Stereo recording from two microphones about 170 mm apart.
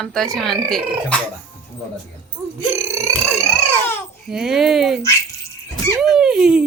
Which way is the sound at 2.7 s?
15° right (ahead or behind).